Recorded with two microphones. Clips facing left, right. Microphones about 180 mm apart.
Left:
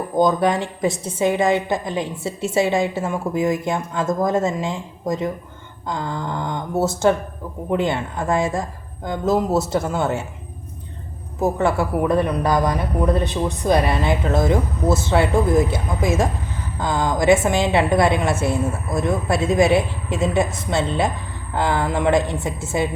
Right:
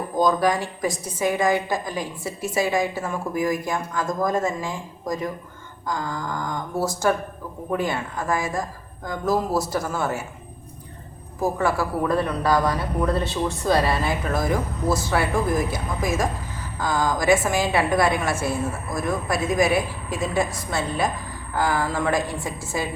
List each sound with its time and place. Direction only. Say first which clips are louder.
0.2 s a woman's voice: left 3 dB; 25° left (ahead or behind)
11.3 s a woman's voice: left 3 dB; 25° left (ahead or behind)